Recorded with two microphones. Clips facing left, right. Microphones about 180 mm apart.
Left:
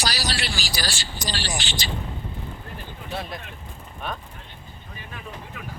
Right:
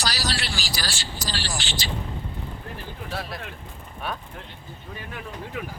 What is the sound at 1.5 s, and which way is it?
Speech, 15° left (ahead or behind).